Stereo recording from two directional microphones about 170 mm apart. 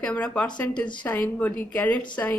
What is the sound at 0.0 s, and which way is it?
Speech, 10° left (ahead or behind).